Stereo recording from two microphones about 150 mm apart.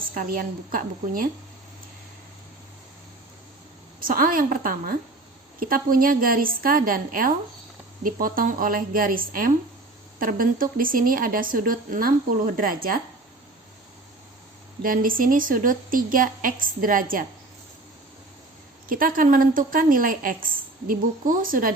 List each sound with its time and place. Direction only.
0.1 s a woman's voice: 65° right (ahead or behind)
4.0 s a woman's voice: 70° right (ahead or behind)
14.8 s a woman's voice: 70° right (ahead or behind)
18.9 s a woman's voice: 70° right (ahead or behind)